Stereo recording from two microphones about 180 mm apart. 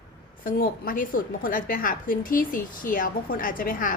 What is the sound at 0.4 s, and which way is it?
A woman's voice, 50° left (ahead or behind).